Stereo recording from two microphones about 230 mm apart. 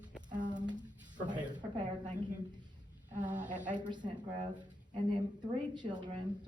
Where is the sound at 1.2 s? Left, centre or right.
Centre.